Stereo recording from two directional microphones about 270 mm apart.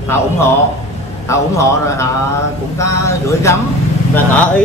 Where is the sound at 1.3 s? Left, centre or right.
Centre.